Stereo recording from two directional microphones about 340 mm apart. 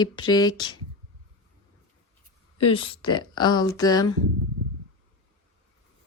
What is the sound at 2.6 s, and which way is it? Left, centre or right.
Speech, centre.